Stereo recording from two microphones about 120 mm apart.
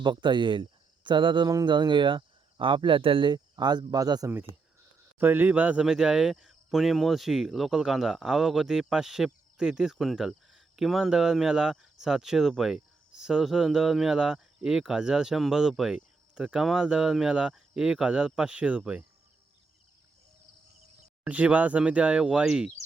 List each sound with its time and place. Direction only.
0.0 s speech: 40° right (ahead or behind)
5.2 s speech: 15° right (ahead or behind)
21.2 s speech: 10° right (ahead or behind)